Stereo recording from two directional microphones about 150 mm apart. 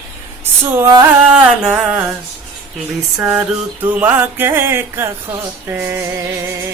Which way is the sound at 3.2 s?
15° right (ahead or behind).